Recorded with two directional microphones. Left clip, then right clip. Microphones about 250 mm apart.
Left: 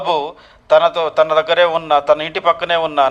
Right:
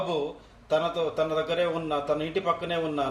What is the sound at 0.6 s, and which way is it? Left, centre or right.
A man's voice, left.